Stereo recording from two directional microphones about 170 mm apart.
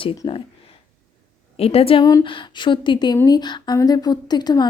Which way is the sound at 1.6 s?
35° left (ahead or behind).